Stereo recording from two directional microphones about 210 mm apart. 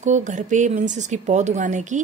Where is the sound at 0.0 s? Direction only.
35° right (ahead or behind).